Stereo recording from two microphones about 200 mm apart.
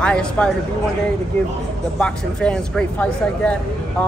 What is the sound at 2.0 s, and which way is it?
A woman's voice, 5° left (ahead or behind).